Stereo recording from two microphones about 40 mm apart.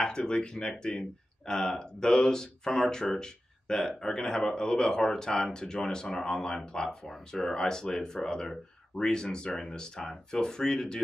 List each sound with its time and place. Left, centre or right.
0.0 s speech: centre
7.1 s speech: centre
7.5 s speech: centre